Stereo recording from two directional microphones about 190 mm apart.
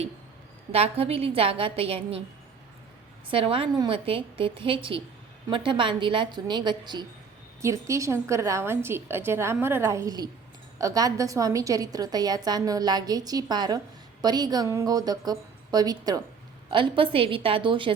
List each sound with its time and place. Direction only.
0.7 s a woman's voice: 30° right (ahead or behind)
3.2 s a woman's voice: 25° right (ahead or behind)